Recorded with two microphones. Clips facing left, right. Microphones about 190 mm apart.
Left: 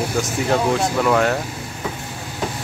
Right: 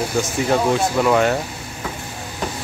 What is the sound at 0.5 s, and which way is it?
Speech, 5° right (ahead or behind).